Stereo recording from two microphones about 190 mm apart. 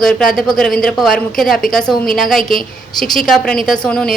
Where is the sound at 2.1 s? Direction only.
Centre (ahead or behind).